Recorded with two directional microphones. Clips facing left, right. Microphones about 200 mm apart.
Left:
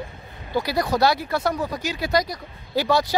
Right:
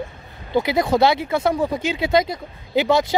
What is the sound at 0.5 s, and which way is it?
Speech, 20° right (ahead or behind).